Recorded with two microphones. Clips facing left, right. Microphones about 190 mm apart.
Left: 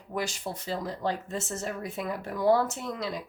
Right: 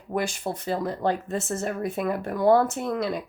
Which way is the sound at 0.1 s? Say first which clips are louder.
Right 5 dB; 55° right (ahead or behind).